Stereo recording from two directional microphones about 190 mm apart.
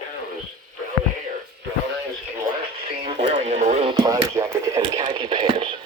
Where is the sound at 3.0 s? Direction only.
30° right (ahead or behind); by 4.8 s 15° right (ahead or behind).